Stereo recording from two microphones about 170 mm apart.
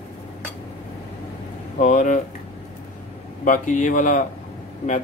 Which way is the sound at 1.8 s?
45° left (ahead or behind).